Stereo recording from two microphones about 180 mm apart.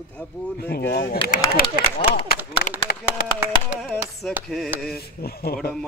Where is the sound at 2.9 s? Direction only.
60° left (ahead or behind).